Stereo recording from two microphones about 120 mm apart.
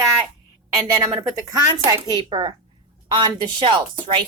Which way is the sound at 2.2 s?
40° right (ahead or behind).